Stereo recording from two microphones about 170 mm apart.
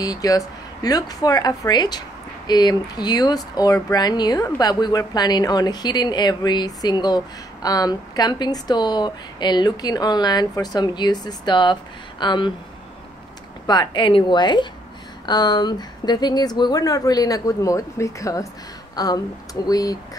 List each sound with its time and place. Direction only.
0.0 s a woman's voice: 20° left (ahead or behind)
13.7 s a woman's voice: 25° left (ahead or behind)